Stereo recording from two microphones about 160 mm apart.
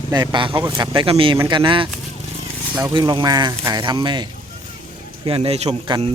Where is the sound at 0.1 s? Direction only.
25° right (ahead or behind).